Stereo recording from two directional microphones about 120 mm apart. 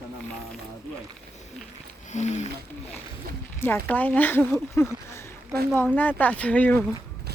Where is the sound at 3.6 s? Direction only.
20° left (ahead or behind).